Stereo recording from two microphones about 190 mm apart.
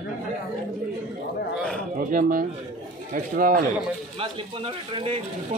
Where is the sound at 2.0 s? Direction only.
45° right (ahead or behind).